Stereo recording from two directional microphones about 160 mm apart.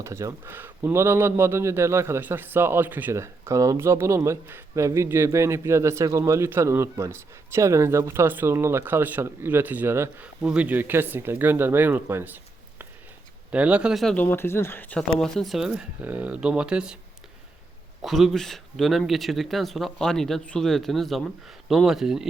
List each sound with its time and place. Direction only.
0.0 s speech: 20° right (ahead or behind)
13.5 s speech: 10° right (ahead or behind)
18.0 s speech: centre (ahead or behind)